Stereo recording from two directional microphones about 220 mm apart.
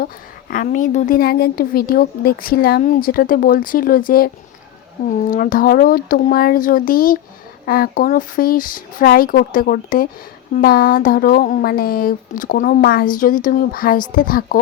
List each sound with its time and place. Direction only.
0.5 s speech: 35° left (ahead or behind)